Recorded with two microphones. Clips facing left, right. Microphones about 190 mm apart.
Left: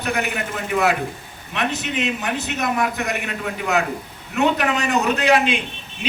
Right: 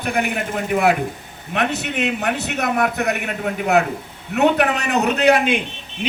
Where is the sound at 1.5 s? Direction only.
60° right (ahead or behind).